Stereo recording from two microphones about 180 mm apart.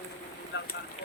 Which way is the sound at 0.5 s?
70° left (ahead or behind).